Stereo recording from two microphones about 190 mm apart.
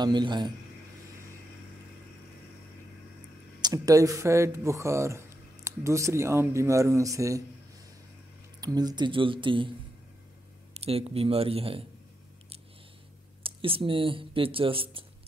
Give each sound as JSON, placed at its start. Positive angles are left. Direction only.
{"t": 0.0, "sound": "speech", "side_deg": -25}
{"t": 3.6, "sound": "speech", "side_deg": -20}
{"t": 8.5, "sound": "speech", "side_deg": -20}
{"t": 10.7, "sound": "speech", "side_deg": -30}
{"t": 13.4, "sound": "speech", "side_deg": -30}